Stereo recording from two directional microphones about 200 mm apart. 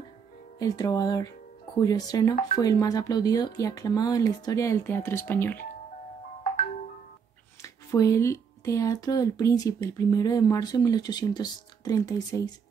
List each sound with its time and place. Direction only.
0.6 s speech: 15° left (ahead or behind)
7.6 s speech: 15° left (ahead or behind)